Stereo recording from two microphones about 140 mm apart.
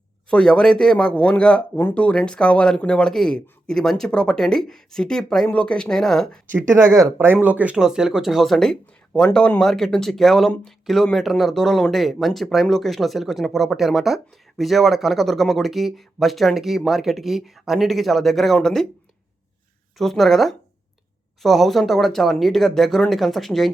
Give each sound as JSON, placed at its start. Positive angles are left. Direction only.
{"t": 0.3, "sound": "speech", "side_deg": 5}
{"t": 6.7, "sound": "speech", "side_deg": -20}
{"t": 7.3, "sound": "speech", "side_deg": -10}
{"t": 20.0, "sound": "speech", "side_deg": 0}